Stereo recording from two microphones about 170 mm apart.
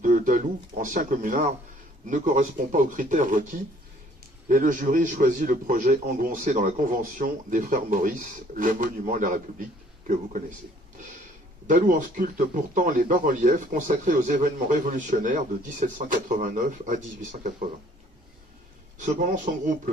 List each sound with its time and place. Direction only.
0.0 s speech: 50° right (ahead or behind)
11.6 s speech: 50° right (ahead or behind)
18.9 s speech: 45° right (ahead or behind)